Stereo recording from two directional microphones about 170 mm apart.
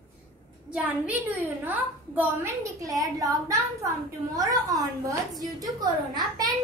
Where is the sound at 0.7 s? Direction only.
10° right (ahead or behind).